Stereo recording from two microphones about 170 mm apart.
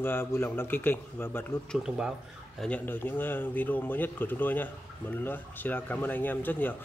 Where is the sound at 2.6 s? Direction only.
10° left (ahead or behind).